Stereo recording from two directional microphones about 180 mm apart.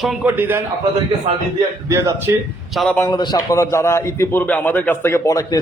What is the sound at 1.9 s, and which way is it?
Speech, 15° right (ahead or behind).